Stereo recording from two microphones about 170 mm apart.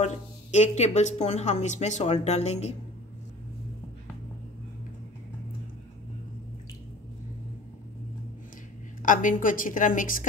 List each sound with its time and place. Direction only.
0.0 s speech: 40° left (ahead or behind)
9.0 s a woman's voice: 50° left (ahead or behind)